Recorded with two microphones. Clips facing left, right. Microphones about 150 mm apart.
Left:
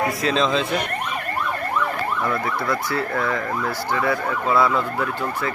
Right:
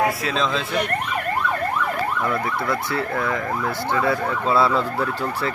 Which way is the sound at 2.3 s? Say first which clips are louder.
Even; 25° right (ahead or behind).